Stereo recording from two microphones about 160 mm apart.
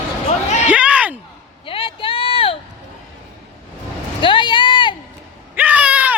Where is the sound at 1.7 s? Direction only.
35° left (ahead or behind).